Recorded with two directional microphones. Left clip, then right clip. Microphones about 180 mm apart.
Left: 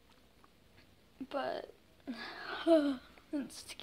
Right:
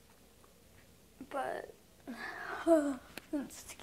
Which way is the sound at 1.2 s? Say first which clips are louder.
Even; 20° left (ahead or behind).